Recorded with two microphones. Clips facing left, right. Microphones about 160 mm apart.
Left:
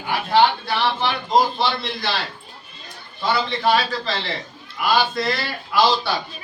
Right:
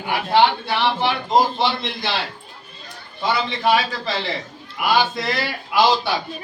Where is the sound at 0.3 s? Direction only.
25° right (ahead or behind).